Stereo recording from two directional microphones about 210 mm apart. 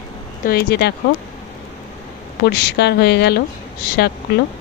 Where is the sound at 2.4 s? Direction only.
55° left (ahead or behind).